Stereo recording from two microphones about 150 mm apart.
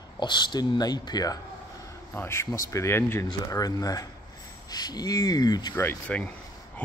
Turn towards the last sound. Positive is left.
turn(degrees=10)  # may be behind; listen again after turning